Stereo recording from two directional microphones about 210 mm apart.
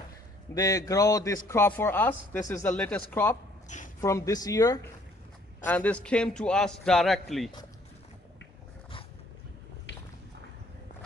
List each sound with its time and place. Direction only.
0.6 s a man's voice: 15° left (ahead or behind)
3.6 s speech: 35° left (ahead or behind)
4.0 s a man's voice: 15° left (ahead or behind)
5.7 s a man's voice: 5° left (ahead or behind)